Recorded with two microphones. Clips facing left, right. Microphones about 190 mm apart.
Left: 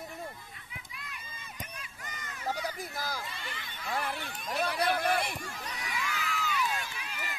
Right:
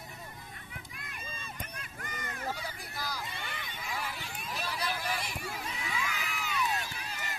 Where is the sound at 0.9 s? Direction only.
50° right (ahead or behind).